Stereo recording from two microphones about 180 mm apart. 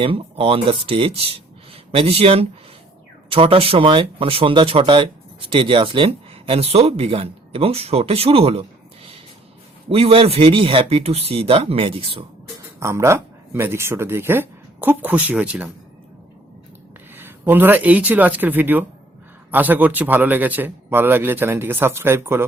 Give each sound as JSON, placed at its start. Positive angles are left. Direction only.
{"t": 0.0, "sound": "speech", "side_deg": -30}
{"t": 9.9, "sound": "speech", "side_deg": -30}
{"t": 12.5, "sound": "speech", "side_deg": -15}
{"t": 17.2, "sound": "a man's voice", "side_deg": -10}